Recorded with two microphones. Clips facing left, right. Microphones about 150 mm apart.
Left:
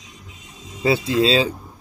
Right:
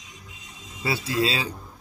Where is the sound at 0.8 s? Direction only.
20° left (ahead or behind).